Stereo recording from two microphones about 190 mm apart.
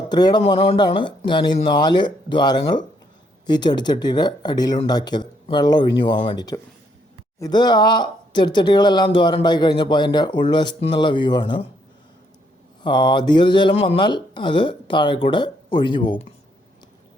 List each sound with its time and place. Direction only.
0.1 s speech: 20° left (ahead or behind)
12.8 s speech: 25° left (ahead or behind)